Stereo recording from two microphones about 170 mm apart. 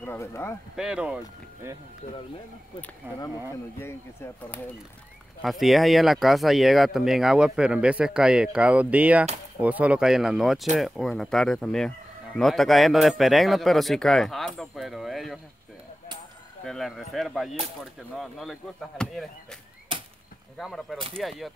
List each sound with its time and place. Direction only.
0.0 s speech: 15° left (ahead or behind)
0.7 s speech: 5° right (ahead or behind)
3.0 s speech: 15° right (ahead or behind)
3.7 s speech: 15° left (ahead or behind)
5.4 s speech: centre (ahead or behind)
16.6 s speech: centre (ahead or behind)
20.5 s speech: centre (ahead or behind)